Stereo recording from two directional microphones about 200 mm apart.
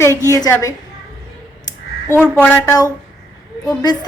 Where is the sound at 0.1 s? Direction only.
15° right (ahead or behind).